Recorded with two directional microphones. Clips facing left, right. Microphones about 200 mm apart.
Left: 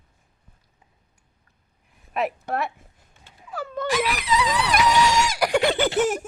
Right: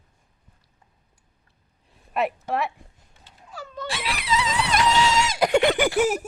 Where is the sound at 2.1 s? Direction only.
Centre (ahead or behind).